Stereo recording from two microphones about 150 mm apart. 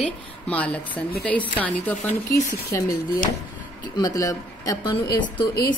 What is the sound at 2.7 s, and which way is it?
Speech, 20° left (ahead or behind).